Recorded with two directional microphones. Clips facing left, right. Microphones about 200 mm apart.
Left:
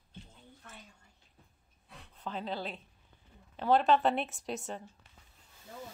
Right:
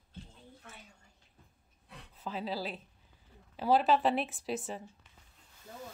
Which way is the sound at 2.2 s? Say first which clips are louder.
Right 1 dB; 5° right (ahead or behind).